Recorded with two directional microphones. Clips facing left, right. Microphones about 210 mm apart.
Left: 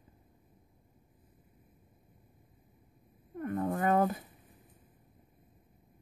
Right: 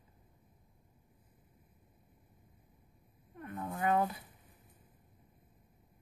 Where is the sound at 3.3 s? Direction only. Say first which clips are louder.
Left 9 dB; 45° left (ahead or behind).